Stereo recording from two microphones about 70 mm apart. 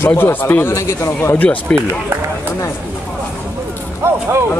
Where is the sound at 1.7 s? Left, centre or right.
Centre.